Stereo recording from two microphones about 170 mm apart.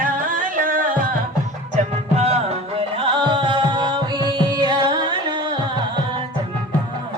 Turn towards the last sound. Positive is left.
turn(degrees=-25)  # may be behind; listen again after turning